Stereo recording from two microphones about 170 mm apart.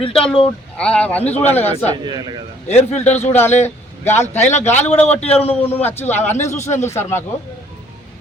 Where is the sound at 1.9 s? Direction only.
25° right (ahead or behind).